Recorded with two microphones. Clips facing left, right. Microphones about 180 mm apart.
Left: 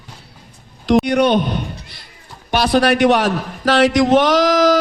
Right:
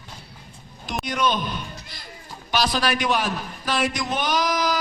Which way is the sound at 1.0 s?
65° left (ahead or behind).